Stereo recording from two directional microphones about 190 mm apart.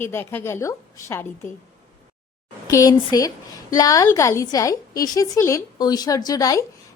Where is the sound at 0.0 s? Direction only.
10° left (ahead or behind).